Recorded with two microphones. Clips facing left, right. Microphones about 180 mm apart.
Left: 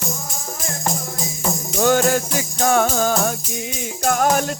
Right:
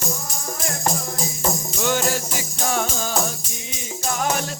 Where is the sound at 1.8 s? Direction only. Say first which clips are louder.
Left 7 dB; 50° left (ahead or behind).